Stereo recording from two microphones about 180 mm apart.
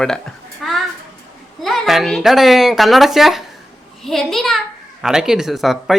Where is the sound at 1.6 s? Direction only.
Centre (ahead or behind).